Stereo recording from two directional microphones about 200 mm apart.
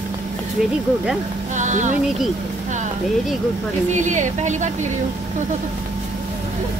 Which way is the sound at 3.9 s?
40° right (ahead or behind).